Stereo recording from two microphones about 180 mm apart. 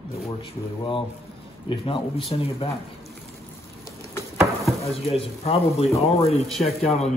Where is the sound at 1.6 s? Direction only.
30° left (ahead or behind).